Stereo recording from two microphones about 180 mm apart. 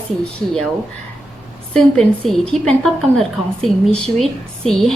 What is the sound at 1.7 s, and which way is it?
A woman's voice, 5° left (ahead or behind).